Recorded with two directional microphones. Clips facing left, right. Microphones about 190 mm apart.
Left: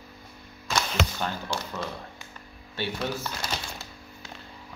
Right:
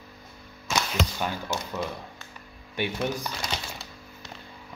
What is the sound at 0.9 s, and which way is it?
Speech, 15° right (ahead or behind).